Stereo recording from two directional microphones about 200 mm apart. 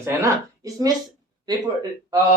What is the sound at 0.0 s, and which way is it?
Speech, 15° right (ahead or behind).